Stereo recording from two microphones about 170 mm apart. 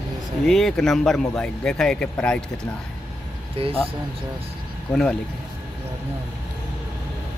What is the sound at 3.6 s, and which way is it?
Speech, 30° right (ahead or behind).